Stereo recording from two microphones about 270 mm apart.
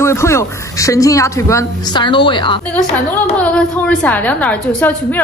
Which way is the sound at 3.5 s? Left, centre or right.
Centre.